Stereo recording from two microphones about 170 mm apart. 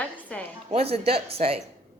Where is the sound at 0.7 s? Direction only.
35° right (ahead or behind).